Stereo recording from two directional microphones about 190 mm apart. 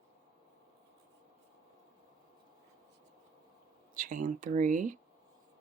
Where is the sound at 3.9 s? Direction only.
45° right (ahead or behind).